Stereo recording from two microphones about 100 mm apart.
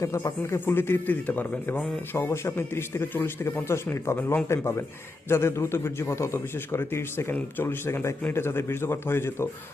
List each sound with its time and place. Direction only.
0.0 s a man's voice: 25° left (ahead or behind)